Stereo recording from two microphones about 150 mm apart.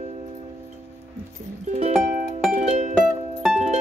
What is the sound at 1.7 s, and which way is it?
Music, 50° right (ahead or behind).